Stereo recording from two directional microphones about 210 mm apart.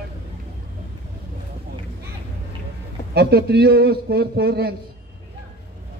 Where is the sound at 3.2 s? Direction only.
50° right (ahead or behind).